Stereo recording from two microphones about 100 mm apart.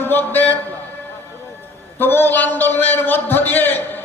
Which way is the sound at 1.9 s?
20° left (ahead or behind).